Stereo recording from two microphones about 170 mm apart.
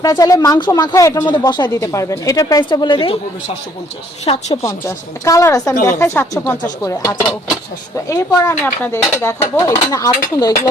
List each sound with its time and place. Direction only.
0.0 s speech: 20° left (ahead or behind)
4.3 s a woman's voice: 35° left (ahead or behind)
4.6 s speech: 20° left (ahead or behind)